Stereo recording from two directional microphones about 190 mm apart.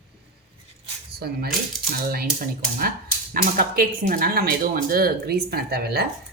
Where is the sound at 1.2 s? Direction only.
55° right (ahead or behind).